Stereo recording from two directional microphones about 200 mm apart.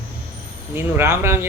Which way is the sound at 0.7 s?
10° right (ahead or behind).